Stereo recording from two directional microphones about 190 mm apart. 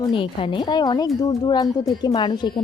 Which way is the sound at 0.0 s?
25° left (ahead or behind).